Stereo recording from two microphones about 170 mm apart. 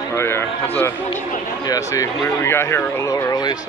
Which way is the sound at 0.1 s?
15° left (ahead or behind).